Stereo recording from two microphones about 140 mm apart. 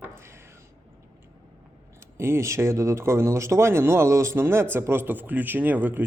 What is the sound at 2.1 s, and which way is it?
Speech, 20° right (ahead or behind).